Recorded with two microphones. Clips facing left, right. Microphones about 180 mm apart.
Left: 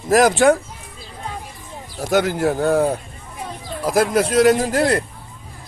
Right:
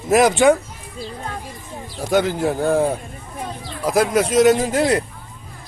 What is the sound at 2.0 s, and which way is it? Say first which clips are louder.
A man's voice: even; 5° left (ahead or behind).